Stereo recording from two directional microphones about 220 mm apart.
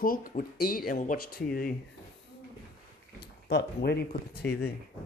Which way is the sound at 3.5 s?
45° left (ahead or behind).